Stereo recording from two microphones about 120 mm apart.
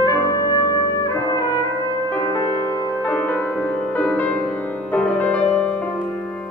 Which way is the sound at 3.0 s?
15° left (ahead or behind).